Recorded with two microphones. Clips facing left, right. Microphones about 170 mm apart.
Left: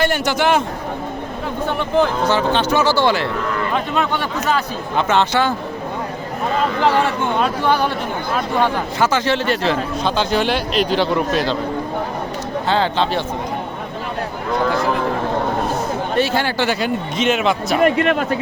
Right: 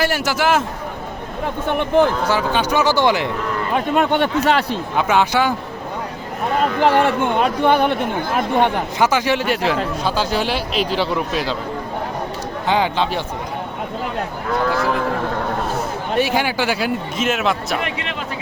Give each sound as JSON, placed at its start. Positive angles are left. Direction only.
{"t": 0.0, "sound": "a man's voice", "side_deg": -5}
{"t": 1.8, "sound": "a man's voice", "side_deg": -10}
{"t": 3.9, "sound": "speech", "side_deg": -55}
{"t": 4.4, "sound": "speech", "side_deg": -75}
{"t": 4.9, "sound": "a man's voice", "side_deg": -10}
{"t": 6.7, "sound": "speech", "side_deg": -55}
{"t": 8.6, "sound": "a man's voice", "side_deg": -15}
{"t": 12.6, "sound": "a man's voice", "side_deg": -15}
{"t": 16.1, "sound": "a man's voice", "side_deg": -15}
{"t": 17.7, "sound": "a man's voice", "side_deg": 45}